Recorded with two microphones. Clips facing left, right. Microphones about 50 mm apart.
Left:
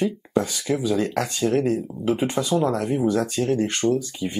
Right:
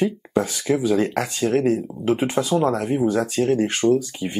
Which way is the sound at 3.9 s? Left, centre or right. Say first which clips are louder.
Right 3 dB; right.